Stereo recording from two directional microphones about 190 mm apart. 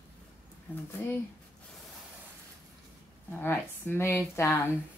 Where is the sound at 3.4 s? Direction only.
10° left (ahead or behind).